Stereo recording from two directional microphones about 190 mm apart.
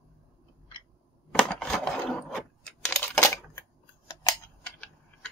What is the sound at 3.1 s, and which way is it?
Typewriter, 15° left (ahead or behind).